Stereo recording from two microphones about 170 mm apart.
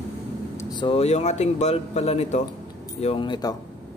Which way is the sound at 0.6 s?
25° left (ahead or behind).